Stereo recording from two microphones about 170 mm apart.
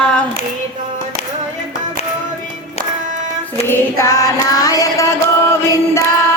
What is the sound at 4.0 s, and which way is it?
Music, 20° left (ahead or behind).